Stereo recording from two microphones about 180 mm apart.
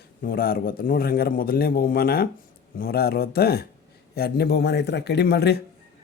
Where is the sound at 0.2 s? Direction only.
55° left (ahead or behind).